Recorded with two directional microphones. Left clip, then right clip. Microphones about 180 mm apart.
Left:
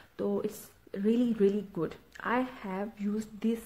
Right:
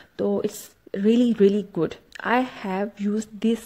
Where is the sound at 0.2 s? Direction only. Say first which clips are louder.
Right 8 dB; 30° right (ahead or behind).